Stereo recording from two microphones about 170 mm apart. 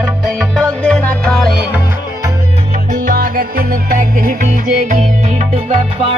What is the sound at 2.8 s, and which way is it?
Music, 55° right (ahead or behind).